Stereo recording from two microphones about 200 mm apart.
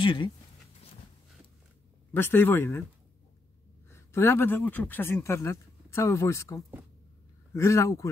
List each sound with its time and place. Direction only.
0.0 s speech: 25° left (ahead or behind)
2.1 s speech: 10° left (ahead or behind)
3.9 s speech: 10° left (ahead or behind)